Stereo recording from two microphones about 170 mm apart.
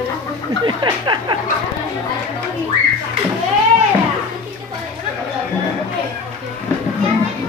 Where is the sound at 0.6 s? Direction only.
25° right (ahead or behind).